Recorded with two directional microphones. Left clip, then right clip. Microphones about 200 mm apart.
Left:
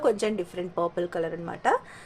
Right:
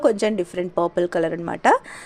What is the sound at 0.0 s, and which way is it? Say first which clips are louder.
A woman's voice: right 6 dB; 35° right (ahead or behind).